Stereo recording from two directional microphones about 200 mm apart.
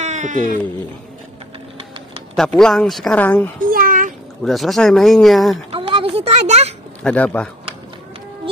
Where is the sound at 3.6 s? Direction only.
45° right (ahead or behind).